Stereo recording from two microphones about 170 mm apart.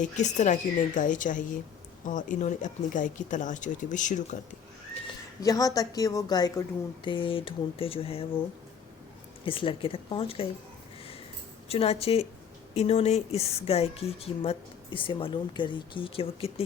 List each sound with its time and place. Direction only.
0.0 s speech: 45° left (ahead or behind)
5.4 s a woman's voice: 20° left (ahead or behind)
9.4 s a woman's voice: 30° left (ahead or behind)
11.7 s a woman's voice: 35° left (ahead or behind)